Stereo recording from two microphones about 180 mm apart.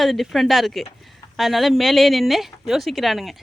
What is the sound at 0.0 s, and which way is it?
Speech, centre (ahead or behind).